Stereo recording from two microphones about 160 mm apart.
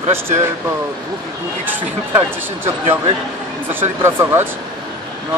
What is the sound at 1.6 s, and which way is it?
Speech, 10° right (ahead or behind).